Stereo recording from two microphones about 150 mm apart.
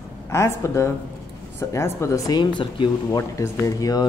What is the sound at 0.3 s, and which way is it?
Speech, 20° left (ahead or behind).